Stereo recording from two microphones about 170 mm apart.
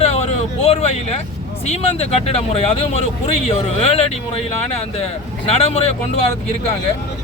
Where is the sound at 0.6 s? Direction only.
35° left (ahead or behind).